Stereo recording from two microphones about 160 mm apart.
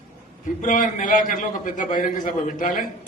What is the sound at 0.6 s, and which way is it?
A man's voice, 55° left (ahead or behind).